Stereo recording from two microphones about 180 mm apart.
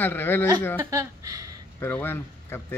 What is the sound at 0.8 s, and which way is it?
Speech, 15° right (ahead or behind).